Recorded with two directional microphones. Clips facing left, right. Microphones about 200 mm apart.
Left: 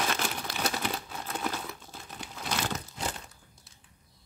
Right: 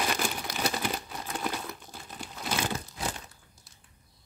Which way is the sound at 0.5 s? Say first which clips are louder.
Right 1 dB; centre (ahead or behind).